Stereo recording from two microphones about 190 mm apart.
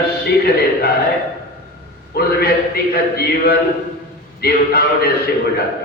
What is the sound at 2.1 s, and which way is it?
A man's voice, 55° left (ahead or behind).